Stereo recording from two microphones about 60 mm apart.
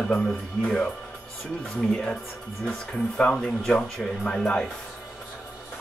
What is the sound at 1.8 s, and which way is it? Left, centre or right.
Speech, centre.